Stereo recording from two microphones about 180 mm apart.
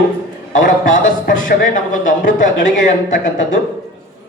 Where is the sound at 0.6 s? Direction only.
45° left (ahead or behind).